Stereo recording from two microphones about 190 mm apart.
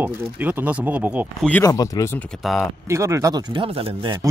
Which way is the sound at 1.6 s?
20° left (ahead or behind).